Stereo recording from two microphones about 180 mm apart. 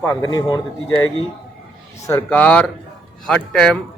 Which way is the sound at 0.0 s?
10° left (ahead or behind).